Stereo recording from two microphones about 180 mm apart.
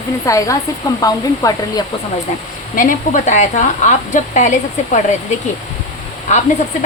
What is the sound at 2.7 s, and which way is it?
Speech, 50° left (ahead or behind).